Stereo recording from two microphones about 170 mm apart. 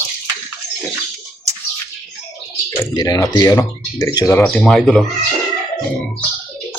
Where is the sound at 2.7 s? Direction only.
25° left (ahead or behind); by 5.0 s centre (ahead or behind).